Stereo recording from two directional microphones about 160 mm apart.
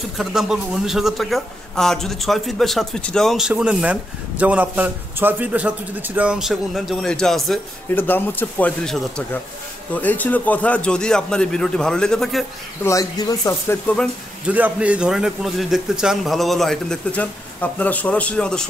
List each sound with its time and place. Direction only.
0.2 s a man's voice: 5° right (ahead or behind)
12.8 s speech: 20° left (ahead or behind)
14.5 s a man's voice: 10° right (ahead or behind)